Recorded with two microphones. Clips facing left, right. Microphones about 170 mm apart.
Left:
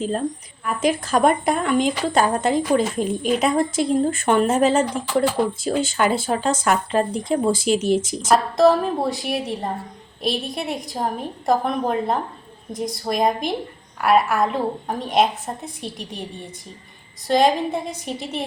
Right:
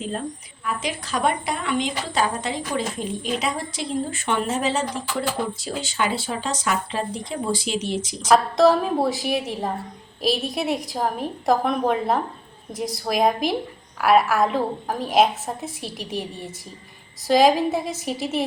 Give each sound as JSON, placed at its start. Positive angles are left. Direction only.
{"t": 0.6, "sound": "speech", "side_deg": 50}
{"t": 8.3, "sound": "a woman's voice", "side_deg": 0}